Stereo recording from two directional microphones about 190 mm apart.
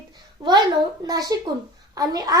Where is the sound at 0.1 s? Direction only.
20° right (ahead or behind).